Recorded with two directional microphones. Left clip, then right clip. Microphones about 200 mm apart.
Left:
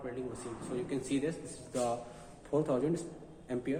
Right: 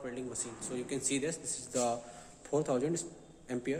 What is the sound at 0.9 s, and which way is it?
Speech, 60° right (ahead or behind).